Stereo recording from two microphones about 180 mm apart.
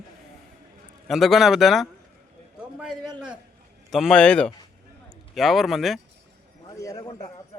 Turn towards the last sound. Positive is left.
turn(degrees=20)  # may be behind; listen again after turning